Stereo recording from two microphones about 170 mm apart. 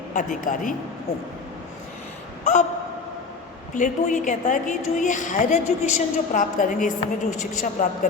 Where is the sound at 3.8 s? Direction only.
50° left (ahead or behind).